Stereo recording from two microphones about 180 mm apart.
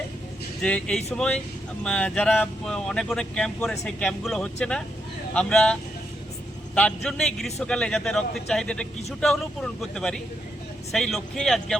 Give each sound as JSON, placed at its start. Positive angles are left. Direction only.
{"t": 0.6, "sound": "speech", "side_deg": 5}
{"t": 6.7, "sound": "speech", "side_deg": 5}